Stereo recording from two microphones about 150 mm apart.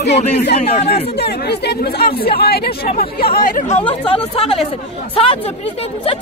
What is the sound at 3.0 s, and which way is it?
Speech, 80° left.